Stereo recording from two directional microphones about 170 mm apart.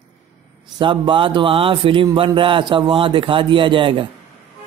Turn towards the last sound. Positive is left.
turn(degrees=-30)  # may be behind; listen again after turning